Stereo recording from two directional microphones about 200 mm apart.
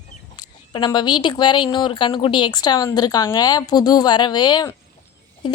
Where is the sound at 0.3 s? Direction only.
20° left (ahead or behind).